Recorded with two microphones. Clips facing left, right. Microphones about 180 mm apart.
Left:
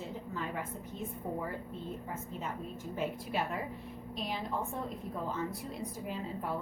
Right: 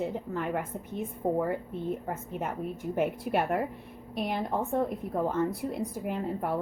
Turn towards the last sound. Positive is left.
turn(degrees=-60)  # may be behind; listen again after turning